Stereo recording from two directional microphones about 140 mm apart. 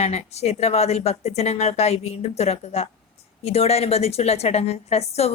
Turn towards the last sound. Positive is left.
turn(degrees=50)  # may be behind; listen again after turning